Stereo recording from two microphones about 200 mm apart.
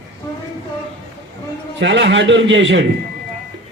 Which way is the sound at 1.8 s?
60° right (ahead or behind).